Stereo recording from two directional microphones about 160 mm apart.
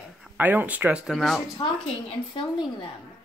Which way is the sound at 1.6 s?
30° left (ahead or behind).